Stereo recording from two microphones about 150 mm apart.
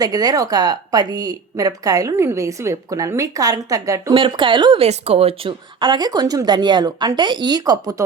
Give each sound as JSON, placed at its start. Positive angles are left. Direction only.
{"t": 0.0, "sound": "a woman's voice", "side_deg": -25}
{"t": 4.1, "sound": "speech", "side_deg": -35}
{"t": 4.9, "sound": "a woman's voice", "side_deg": -45}